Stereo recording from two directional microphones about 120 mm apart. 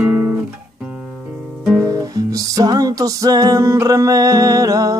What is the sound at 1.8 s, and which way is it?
Music, 30° right (ahead or behind).